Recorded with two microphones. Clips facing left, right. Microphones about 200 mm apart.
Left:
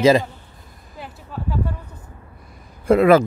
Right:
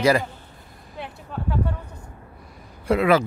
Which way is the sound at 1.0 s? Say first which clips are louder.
Even; 5° left (ahead or behind).